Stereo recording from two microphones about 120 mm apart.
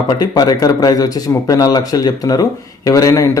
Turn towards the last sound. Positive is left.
turn(degrees=25)  # may be behind; listen again after turning